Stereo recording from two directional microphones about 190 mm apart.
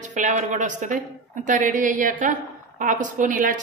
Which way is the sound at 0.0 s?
40° right (ahead or behind).